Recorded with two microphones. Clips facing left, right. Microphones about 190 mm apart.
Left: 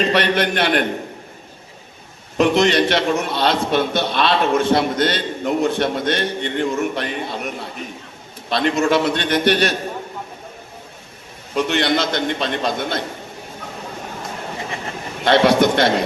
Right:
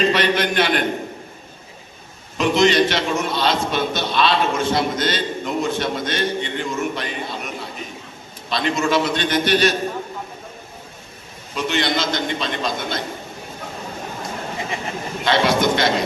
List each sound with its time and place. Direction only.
0.1 s a man's voice: 60° left (ahead or behind)
2.4 s a man's voice: 60° left (ahead or behind)
11.5 s a man's voice: 60° left (ahead or behind)
15.2 s a man's voice: 60° left (ahead or behind)